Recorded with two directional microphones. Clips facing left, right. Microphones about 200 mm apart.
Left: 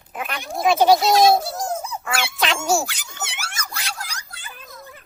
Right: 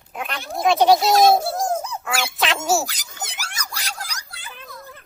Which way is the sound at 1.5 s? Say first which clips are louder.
Right 4 dB; 50° right (ahead or behind).